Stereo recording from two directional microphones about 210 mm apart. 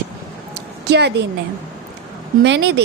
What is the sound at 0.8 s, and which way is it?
Speech, 50° right (ahead or behind).